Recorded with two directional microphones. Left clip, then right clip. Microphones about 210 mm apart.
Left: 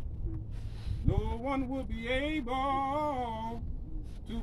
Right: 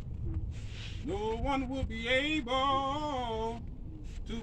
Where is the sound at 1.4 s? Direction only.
10° left (ahead or behind).